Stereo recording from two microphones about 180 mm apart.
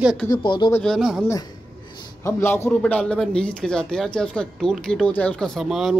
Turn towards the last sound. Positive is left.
turn(degrees=0)  # may be behind; listen again after turning